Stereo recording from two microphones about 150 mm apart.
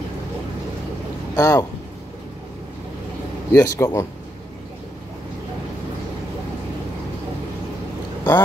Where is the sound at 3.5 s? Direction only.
20° left (ahead or behind).